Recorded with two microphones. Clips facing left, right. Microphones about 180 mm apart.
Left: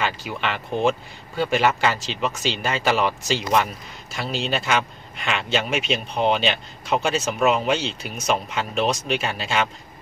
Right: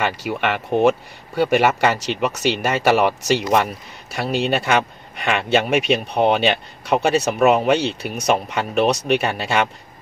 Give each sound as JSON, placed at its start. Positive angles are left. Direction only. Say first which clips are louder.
{"t": 0.0, "sound": "speech", "louder": "right 4 dB", "side_deg": -65}